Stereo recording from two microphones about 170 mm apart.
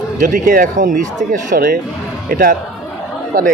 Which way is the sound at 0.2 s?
55° right (ahead or behind).